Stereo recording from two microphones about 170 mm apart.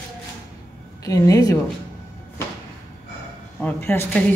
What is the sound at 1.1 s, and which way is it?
Speech, 20° left (ahead or behind).